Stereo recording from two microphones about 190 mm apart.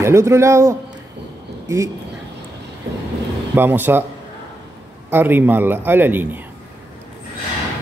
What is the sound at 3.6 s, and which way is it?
Speech, 10° right (ahead or behind).